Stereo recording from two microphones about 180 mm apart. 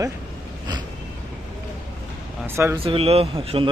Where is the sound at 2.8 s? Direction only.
30° right (ahead or behind).